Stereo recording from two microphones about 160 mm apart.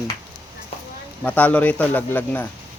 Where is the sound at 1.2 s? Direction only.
10° left (ahead or behind).